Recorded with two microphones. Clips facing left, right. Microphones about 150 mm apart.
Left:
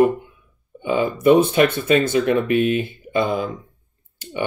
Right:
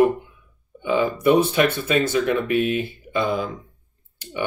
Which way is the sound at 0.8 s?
45° left (ahead or behind).